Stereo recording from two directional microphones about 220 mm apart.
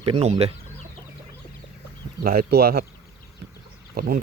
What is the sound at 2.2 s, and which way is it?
Speech, 40° right (ahead or behind).